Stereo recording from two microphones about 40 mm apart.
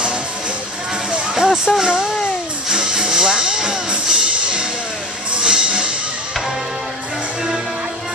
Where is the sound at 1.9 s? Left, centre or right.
Right.